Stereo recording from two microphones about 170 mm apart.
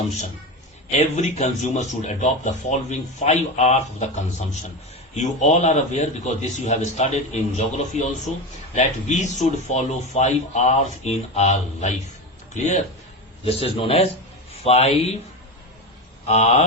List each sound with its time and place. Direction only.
0.9 s speech: 40° left (ahead or behind)
13.4 s speech: 35° left (ahead or behind)
16.2 s speech: 40° left (ahead or behind)